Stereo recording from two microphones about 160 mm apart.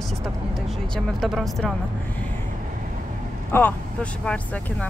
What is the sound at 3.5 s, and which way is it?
Speech, 10° left (ahead or behind).